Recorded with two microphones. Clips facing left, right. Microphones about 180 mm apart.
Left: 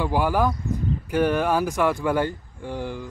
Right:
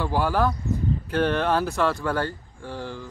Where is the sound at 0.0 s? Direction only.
15° left (ahead or behind).